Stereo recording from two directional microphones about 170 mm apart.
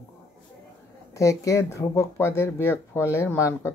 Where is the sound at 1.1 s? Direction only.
20° left (ahead or behind).